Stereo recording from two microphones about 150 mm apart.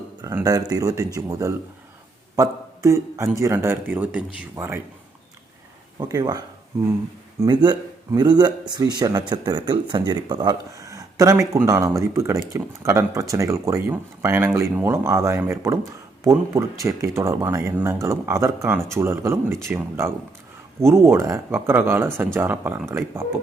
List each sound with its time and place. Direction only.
0.2 s a man's voice: 20° right (ahead or behind)
6.0 s a man's voice: 25° right (ahead or behind)
7.4 s a man's voice: 30° right (ahead or behind)